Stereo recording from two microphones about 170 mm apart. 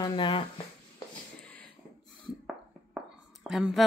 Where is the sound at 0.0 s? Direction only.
30° left (ahead or behind).